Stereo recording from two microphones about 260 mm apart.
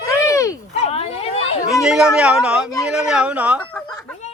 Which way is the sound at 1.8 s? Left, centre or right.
Centre.